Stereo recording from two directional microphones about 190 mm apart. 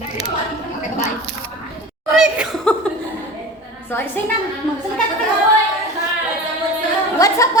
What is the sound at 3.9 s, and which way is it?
Speech, 10° left (ahead or behind).